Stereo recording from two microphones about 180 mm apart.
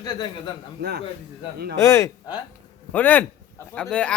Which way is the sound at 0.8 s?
65° right (ahead or behind).